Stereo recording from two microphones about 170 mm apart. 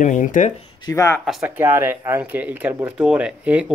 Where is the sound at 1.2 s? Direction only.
Centre (ahead or behind).